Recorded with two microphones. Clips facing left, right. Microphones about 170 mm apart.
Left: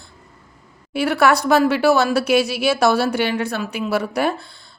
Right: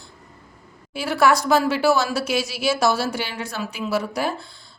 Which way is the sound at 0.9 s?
60° left (ahead or behind).